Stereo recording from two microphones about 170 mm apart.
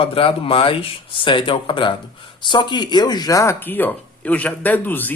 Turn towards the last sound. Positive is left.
turn(degrees=10)  # may be behind; listen again after turning